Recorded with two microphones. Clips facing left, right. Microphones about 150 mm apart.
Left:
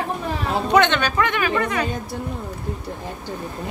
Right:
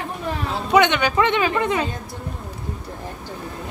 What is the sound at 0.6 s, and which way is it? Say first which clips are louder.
Speech: right 1 dB; 10° right (ahead or behind).